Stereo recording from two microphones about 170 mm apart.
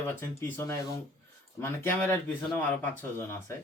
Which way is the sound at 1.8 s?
10° left (ahead or behind).